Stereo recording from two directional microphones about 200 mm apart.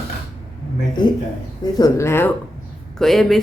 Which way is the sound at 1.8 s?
15° left (ahead or behind).